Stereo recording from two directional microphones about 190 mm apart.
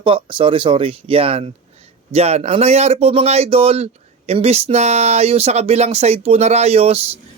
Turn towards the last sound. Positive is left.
turn(degrees=-30)  # may be behind; listen again after turning